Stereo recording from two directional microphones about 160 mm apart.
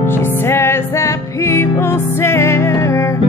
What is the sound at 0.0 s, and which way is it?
Music, 15° left (ahead or behind).